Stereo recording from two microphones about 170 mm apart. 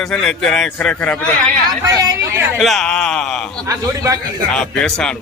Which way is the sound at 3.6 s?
20° right (ahead or behind).